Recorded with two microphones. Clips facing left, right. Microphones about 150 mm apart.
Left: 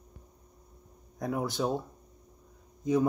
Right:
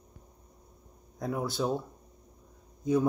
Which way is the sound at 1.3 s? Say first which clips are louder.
Left 1 dB; 15° left (ahead or behind).